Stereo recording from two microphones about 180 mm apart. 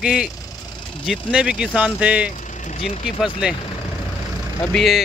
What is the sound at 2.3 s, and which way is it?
Speech, 40° left (ahead or behind).